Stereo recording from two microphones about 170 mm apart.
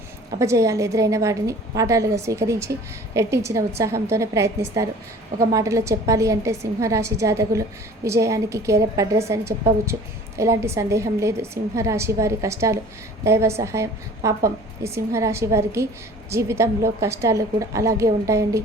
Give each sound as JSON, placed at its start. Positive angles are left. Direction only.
{"t": 0.3, "sound": "a woman's voice", "side_deg": -20}